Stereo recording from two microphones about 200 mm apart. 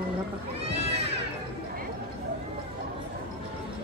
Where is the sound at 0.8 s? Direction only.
30° right (ahead or behind).